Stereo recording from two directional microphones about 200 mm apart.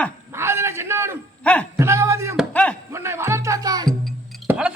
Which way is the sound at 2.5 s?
5° left (ahead or behind).